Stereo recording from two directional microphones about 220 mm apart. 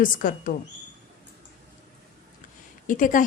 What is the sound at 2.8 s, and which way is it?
Speech, 35° left (ahead or behind).